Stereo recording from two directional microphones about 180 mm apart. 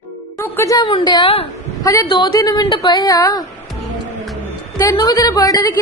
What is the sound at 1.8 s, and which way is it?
A woman's voice, 20° left (ahead or behind).